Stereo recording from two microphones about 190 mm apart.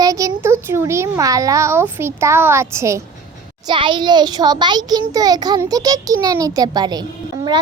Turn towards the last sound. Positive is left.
turn(degrees=-20)  # may be behind; listen again after turning